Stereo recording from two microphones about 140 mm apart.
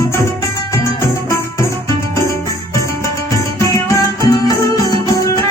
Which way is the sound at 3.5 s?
20° left (ahead or behind).